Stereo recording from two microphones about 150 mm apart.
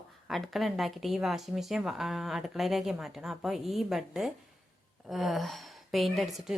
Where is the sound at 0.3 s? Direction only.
Centre (ahead or behind).